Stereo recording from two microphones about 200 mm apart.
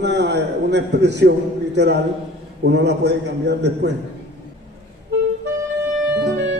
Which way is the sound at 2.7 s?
60° right (ahead or behind).